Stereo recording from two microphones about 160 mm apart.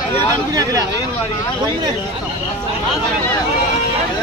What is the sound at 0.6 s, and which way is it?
Speech, 20° right (ahead or behind).